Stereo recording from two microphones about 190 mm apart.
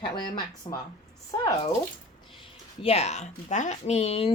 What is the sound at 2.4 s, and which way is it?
A woman's voice, 30° left (ahead or behind).